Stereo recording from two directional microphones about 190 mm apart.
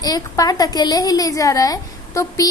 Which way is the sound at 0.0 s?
20° left (ahead or behind).